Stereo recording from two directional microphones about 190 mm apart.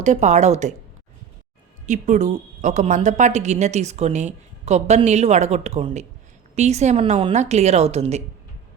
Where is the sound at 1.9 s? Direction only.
40° right (ahead or behind).